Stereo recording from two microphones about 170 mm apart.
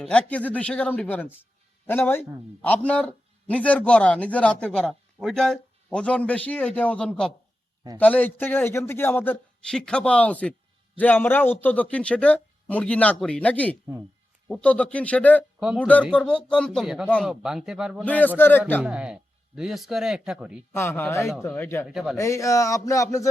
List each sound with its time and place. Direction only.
0.0 s speech: 5° left (ahead or behind)
15.6 s speech: 5° right (ahead or behind)
16.1 s speech: 5° left (ahead or behind)
18.0 s speech: 10° left (ahead or behind)
18.8 s speech: 5° right (ahead or behind)
20.7 s speech: 15° left (ahead or behind)
21.8 s speech: 5° right (ahead or behind)
22.1 s speech: 15° left (ahead or behind)